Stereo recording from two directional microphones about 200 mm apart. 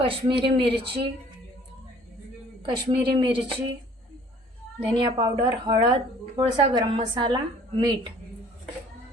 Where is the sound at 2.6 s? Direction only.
25° right (ahead or behind).